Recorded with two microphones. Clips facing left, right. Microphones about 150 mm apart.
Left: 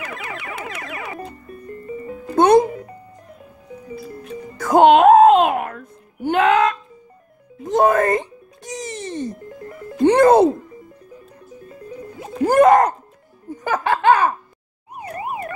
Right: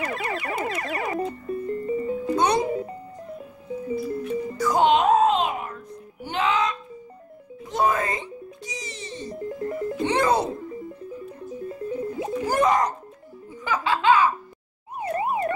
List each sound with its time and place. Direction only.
0.0 s a sound: 40° right (ahead or behind)
1.7 s music: 25° right (ahead or behind)
2.3 s music: 50° left (ahead or behind)
4.6 s music: 55° left (ahead or behind)
12.4 s a sound: 55° left (ahead or behind)
13.5 s laughter: 50° left (ahead or behind)
15.0 s emergency vehicle: 30° right (ahead or behind)